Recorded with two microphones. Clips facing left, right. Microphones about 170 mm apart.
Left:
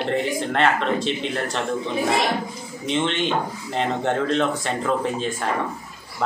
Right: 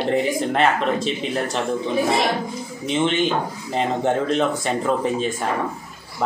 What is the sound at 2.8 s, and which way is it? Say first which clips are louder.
Speech: right 3 dB; 5° right (ahead or behind).